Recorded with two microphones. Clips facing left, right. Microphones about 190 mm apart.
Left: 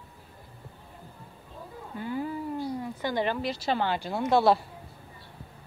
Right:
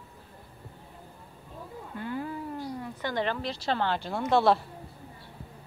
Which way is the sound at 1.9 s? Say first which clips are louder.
Left 2 dB; 10° left (ahead or behind).